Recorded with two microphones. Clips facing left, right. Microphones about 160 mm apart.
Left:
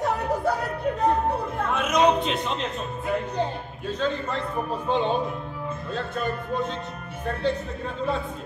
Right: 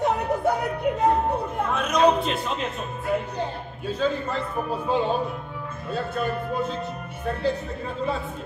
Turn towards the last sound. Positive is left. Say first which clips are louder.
# even
turn(degrees=0)  # may be behind; listen again after turning